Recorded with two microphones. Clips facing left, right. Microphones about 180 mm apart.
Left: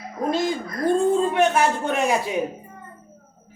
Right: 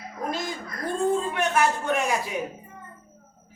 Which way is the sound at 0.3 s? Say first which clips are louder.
Left 8 dB; 25° left (ahead or behind).